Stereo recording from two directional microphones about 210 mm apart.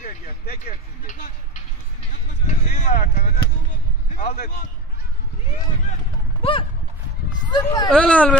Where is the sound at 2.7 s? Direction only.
40° left (ahead or behind).